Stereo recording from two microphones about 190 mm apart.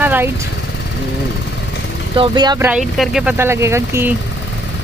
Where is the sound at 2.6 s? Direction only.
5° right (ahead or behind).